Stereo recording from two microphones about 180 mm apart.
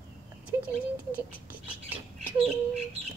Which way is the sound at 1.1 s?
10° right (ahead or behind).